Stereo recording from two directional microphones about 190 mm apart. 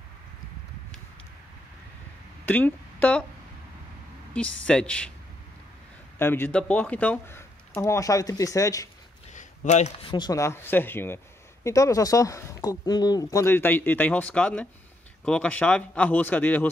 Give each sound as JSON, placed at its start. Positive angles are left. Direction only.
{"t": 2.4, "sound": "a woman's voice", "side_deg": 10}
{"t": 4.3, "sound": "speech", "side_deg": 5}
{"t": 6.1, "sound": "speech", "side_deg": 10}
{"t": 9.3, "sound": "speech", "side_deg": 40}